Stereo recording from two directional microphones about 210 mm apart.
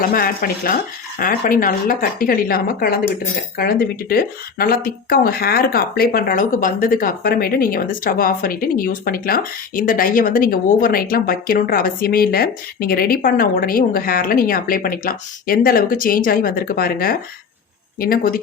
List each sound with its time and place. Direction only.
0.0 s a woman's voice: 40° left (ahead or behind)